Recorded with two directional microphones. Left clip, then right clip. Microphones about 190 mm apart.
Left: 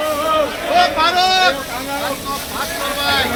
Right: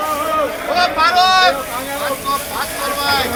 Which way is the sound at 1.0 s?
35° right (ahead or behind).